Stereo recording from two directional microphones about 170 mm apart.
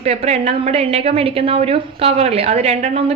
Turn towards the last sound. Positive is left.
turn(degrees=-40)  # may be behind; listen again after turning